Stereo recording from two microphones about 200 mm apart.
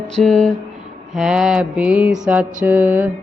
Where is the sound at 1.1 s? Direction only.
5° right (ahead or behind).